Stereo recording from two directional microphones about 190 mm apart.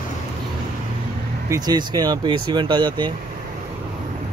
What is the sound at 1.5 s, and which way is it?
Speech, 20° right (ahead or behind).